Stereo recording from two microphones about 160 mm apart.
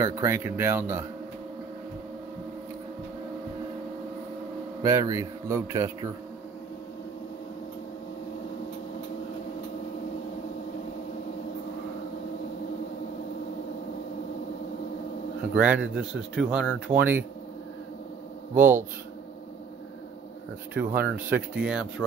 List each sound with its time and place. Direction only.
0.0 s speech: 15° right (ahead or behind)
4.8 s a man's voice: 20° right (ahead or behind)
15.5 s speech: 10° right (ahead or behind)
18.5 s speech: 10° right (ahead or behind)
20.7 s speech: 10° right (ahead or behind)